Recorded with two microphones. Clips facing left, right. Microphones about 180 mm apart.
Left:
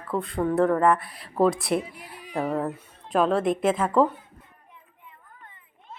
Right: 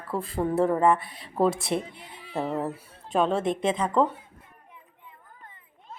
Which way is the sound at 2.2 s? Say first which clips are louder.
Left 2 dB; 15° left (ahead or behind).